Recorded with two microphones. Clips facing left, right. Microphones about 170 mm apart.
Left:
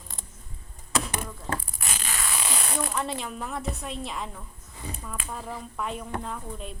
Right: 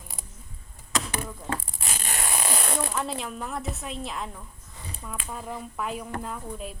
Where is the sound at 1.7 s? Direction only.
30° right (ahead or behind).